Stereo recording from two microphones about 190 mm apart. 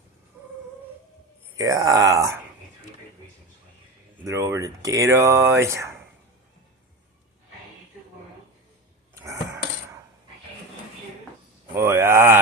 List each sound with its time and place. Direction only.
1.5 s speech: 20° right (ahead or behind)
4.3 s speech: 15° right (ahead or behind)
9.1 s a sound: 15° right (ahead or behind)
11.7 s speech: 15° right (ahead or behind)